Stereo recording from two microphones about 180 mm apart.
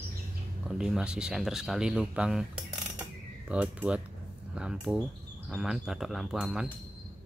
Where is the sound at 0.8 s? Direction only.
5° right (ahead or behind).